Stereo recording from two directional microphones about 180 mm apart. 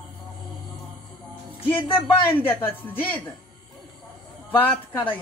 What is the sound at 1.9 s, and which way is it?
Speech, 10° left (ahead or behind).